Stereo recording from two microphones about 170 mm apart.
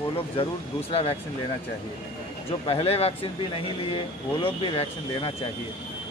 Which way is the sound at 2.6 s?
35° left (ahead or behind).